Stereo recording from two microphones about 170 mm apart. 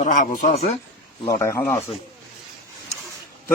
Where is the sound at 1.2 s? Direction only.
15° left (ahead or behind).